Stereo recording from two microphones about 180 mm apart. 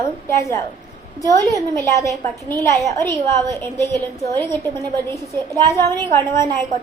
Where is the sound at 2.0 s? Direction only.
20° right (ahead or behind).